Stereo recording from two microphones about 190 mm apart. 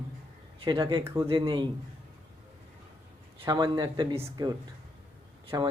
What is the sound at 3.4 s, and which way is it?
Speech, 20° right (ahead or behind).